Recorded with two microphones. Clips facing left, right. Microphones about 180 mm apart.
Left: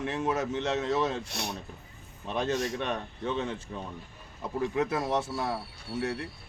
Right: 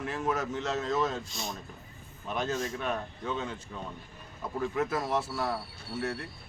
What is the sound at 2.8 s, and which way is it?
Speech, 25° left (ahead or behind).